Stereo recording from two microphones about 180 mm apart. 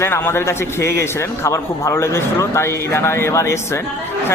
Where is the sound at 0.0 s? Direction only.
15° left (ahead or behind).